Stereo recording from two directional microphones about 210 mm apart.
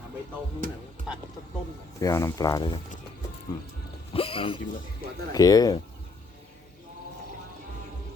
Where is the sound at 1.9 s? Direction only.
15° left (ahead or behind).